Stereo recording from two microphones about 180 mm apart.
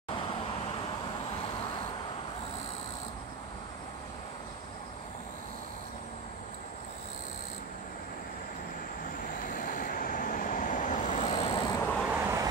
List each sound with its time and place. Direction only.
9.6 s vehicle: 50° left (ahead or behind); by 11.8 s 25° left (ahead or behind)
11.8 s vehicle: 10° left (ahead or behind)
12.1 s vehicle: 15° right (ahead or behind)